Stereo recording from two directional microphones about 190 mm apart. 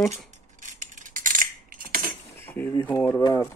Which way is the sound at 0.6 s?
40° right (ahead or behind).